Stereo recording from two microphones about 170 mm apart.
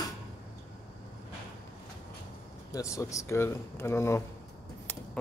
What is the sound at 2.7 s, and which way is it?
Speech, 20° left (ahead or behind).